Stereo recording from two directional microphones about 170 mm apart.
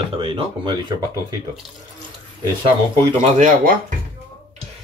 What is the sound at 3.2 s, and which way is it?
Speech, 45° right (ahead or behind).